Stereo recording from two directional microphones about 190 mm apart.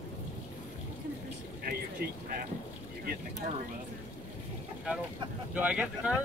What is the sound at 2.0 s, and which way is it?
Speech, 55° right (ahead or behind).